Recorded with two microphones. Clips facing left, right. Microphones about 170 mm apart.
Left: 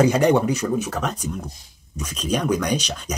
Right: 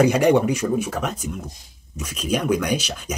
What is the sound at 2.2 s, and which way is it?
Speech, 5° right (ahead or behind).